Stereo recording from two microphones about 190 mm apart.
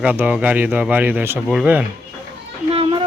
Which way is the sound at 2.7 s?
30° right (ahead or behind).